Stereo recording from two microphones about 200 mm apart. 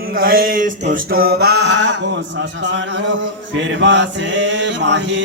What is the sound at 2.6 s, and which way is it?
Mantra, 60° right (ahead or behind).